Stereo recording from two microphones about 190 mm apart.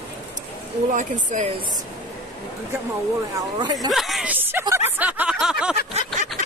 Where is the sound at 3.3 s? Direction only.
20° right (ahead or behind).